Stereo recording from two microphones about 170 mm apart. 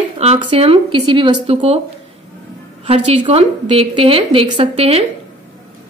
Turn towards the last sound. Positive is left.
turn(degrees=-35)  # may be behind; listen again after turning